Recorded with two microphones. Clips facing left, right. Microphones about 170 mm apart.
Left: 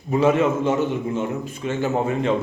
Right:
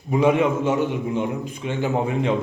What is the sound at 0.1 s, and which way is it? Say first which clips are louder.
A man's voice: even; 15° right (ahead or behind).